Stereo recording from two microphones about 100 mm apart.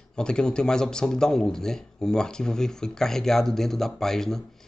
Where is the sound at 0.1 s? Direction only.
10° left (ahead or behind).